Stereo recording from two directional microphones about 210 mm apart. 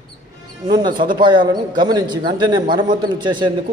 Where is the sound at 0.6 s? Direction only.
20° right (ahead or behind).